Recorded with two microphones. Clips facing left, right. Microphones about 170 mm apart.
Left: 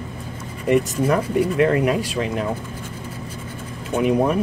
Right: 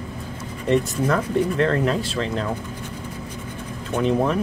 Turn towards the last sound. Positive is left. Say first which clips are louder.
# left 2 dB
turn(degrees=10)  # may be behind; listen again after turning